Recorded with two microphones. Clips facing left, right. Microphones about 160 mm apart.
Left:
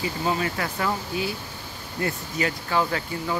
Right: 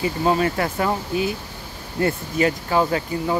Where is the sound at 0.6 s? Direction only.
30° right (ahead or behind).